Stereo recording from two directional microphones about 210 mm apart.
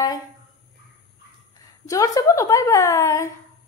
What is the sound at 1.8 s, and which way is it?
A woman's voice, 15° left (ahead or behind).